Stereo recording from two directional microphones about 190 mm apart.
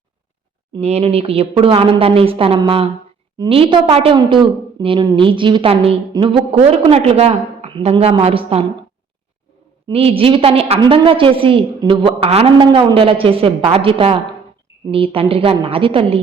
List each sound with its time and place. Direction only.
0.7 s a woman's voice: 35° right (ahead or behind)
9.9 s a woman's voice: 30° right (ahead or behind)